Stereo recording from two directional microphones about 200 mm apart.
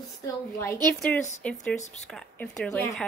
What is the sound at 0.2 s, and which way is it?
A woman's voice, 15° left (ahead or behind).